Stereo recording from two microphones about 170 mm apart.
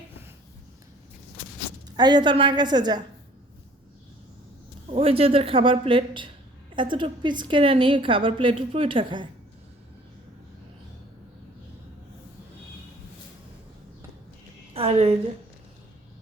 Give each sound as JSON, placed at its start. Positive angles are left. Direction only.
{"t": 2.0, "sound": "a woman's voice", "side_deg": -25}
{"t": 4.9, "sound": "a woman's voice", "side_deg": -35}
{"t": 14.7, "sound": "a woman's voice", "side_deg": -40}